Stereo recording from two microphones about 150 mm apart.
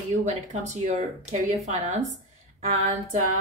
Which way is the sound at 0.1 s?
50° right (ahead or behind).